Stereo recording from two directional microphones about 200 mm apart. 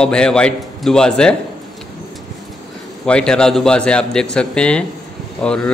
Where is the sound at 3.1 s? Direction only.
5° left (ahead or behind).